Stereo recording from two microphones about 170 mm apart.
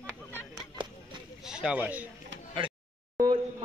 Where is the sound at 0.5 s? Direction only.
25° right (ahead or behind).